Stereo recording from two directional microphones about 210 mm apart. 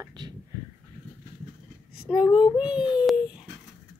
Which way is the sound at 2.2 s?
20° left (ahead or behind).